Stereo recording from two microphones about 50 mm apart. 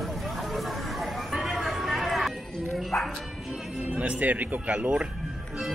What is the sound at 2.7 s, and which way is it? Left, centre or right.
Bow-wow, centre.